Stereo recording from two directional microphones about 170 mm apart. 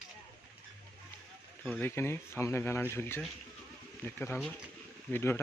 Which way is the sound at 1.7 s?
10° left (ahead or behind).